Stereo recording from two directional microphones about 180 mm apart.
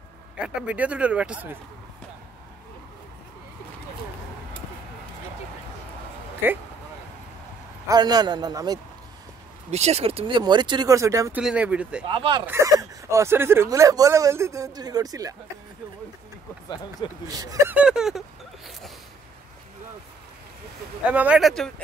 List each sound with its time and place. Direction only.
0.4 s speech: 5° right (ahead or behind)
6.4 s speech: 10° right (ahead or behind)
7.9 s speech: 20° right (ahead or behind)
9.7 s speech: 35° right (ahead or behind); by 12.0 s 5° right (ahead or behind)
12.1 s speech: 30° right (ahead or behind)
12.4 s speech: 15° right (ahead or behind)
16.6 s speech: 25° left (ahead or behind)
17.3 s speech: 20° right (ahead or behind)
17.7 s speech: 5° right (ahead or behind)
21.0 s speech: 10° right (ahead or behind)